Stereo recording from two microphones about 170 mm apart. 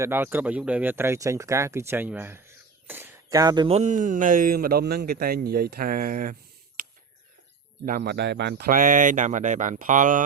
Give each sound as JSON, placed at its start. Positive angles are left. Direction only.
{"t": 0.0, "sound": "speech", "side_deg": -10}
{"t": 2.8, "sound": "a sound", "side_deg": -10}
{"t": 3.2, "sound": "speech", "side_deg": -20}
{"t": 3.8, "sound": "a man's voice", "side_deg": -50}
{"t": 7.9, "sound": "speech", "side_deg": -65}